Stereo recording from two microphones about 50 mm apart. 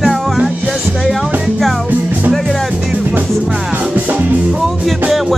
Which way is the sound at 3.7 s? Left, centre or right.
Right.